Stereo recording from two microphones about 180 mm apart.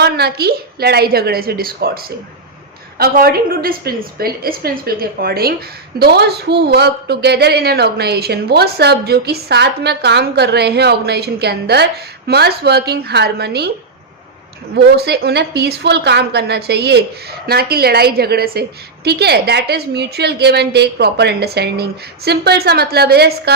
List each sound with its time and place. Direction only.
0.0 s a woman's voice: 60° right (ahead or behind)
14.8 s a woman's voice: 65° right (ahead or behind)